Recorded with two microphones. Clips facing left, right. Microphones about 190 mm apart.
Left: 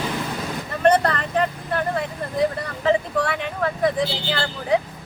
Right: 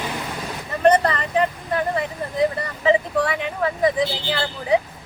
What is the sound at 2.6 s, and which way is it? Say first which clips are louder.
A woman's voice: right 1 dB; 10° right (ahead or behind).